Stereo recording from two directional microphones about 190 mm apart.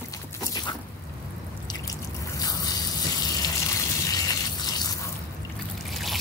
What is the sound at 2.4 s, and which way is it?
Water, 20° left (ahead or behind).